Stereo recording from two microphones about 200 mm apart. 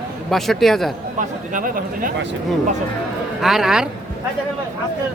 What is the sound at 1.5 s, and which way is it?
Speech, 45° right (ahead or behind).